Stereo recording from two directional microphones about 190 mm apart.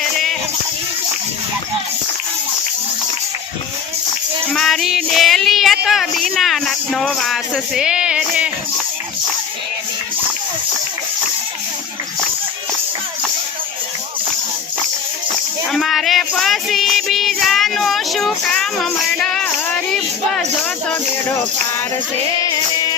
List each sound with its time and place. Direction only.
4.5 s child singing: centre (ahead or behind)
15.7 s music: centre (ahead or behind)
22.4 s music: 20° left (ahead or behind)